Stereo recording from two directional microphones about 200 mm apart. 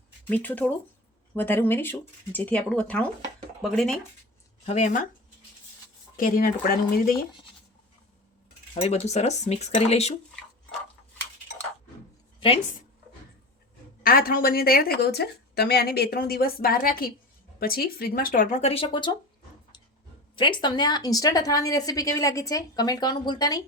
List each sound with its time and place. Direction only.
0.3 s speech: 10° left (ahead or behind)
4.6 s speech: 35° left (ahead or behind)
6.1 s a woman's voice: 45° left (ahead or behind)
8.7 s speech: 30° left (ahead or behind)
14.0 s a woman's voice: 45° left (ahead or behind); by 19.1 s 25° left (ahead or behind)
20.3 s speech: 25° left (ahead or behind)